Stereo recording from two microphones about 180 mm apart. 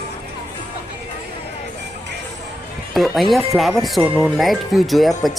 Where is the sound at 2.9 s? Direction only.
Centre (ahead or behind).